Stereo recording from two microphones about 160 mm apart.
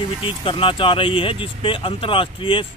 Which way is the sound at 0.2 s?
35° left (ahead or behind).